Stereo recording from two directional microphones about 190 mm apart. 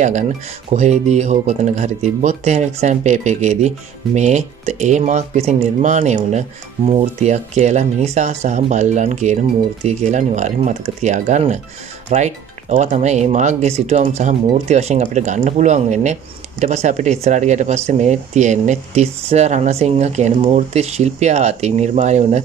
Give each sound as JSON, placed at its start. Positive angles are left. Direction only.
{"t": 0.7, "sound": "speech", "side_deg": -35}